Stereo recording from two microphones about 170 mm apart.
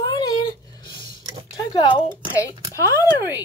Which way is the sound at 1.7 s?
30° left (ahead or behind).